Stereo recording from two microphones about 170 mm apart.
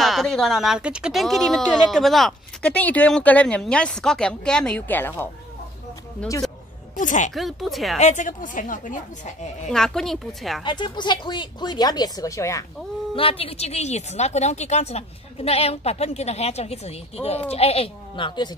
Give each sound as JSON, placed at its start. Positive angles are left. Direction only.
{"t": 0.0, "sound": "speech", "side_deg": 0}
{"t": 7.0, "sound": "a woman's voice", "side_deg": 45}
{"t": 7.3, "sound": "speech", "side_deg": 0}
{"t": 8.0, "sound": "a woman's voice", "side_deg": 45}
{"t": 9.7, "sound": "speech", "side_deg": 5}
{"t": 10.6, "sound": "speech", "side_deg": 25}
{"t": 13.1, "sound": "speech", "side_deg": 35}